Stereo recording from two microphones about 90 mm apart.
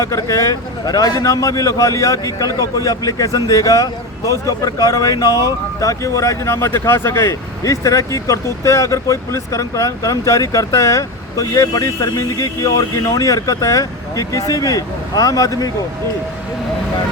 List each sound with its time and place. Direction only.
0.0 s speech: 35° left (ahead or behind)